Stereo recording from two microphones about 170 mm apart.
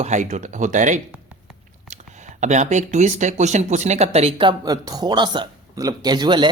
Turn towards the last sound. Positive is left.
turn(degrees=-25)  # may be behind; listen again after turning